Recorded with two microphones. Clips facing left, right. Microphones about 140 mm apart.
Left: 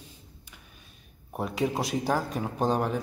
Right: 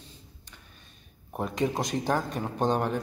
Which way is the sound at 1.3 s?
5° left (ahead or behind).